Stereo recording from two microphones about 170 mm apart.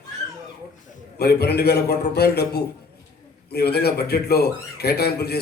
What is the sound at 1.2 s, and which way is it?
A man's voice, 70° left (ahead or behind).